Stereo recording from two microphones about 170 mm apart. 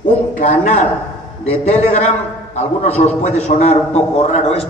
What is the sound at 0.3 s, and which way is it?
A man's voice, 45° left (ahead or behind).